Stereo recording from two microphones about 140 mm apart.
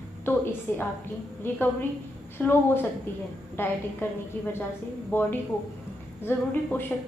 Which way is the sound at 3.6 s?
15° left (ahead or behind).